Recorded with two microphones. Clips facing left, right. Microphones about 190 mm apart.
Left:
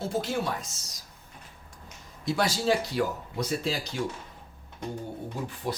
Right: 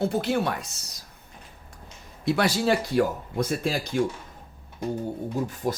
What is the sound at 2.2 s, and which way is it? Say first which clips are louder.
Speech: right 4 dB; 60° right (ahead or behind).